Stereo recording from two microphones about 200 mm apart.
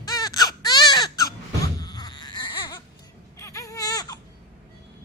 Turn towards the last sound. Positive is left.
turn(degrees=20)  # may be behind; listen again after turning